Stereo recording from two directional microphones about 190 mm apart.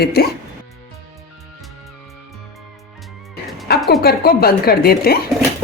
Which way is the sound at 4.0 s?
55° left (ahead or behind).